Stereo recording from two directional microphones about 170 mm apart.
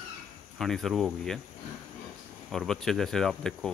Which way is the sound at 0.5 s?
Centre (ahead or behind).